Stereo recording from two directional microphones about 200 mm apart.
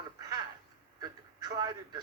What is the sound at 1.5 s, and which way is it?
Speech, 20° right (ahead or behind).